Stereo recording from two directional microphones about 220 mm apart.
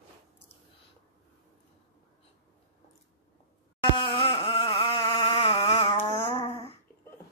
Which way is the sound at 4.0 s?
20° left (ahead or behind).